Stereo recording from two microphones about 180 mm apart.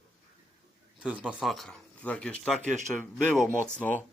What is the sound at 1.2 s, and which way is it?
Speech, centre (ahead or behind).